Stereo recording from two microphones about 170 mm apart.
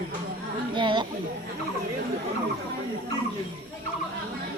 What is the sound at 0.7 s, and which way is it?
Speech, 30° right (ahead or behind).